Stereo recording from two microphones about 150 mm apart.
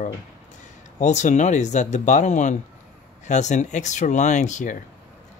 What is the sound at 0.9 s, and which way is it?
Speech, 50° left (ahead or behind).